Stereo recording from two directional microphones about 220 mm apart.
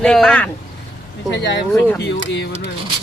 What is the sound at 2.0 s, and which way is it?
Speech, 50° left (ahead or behind).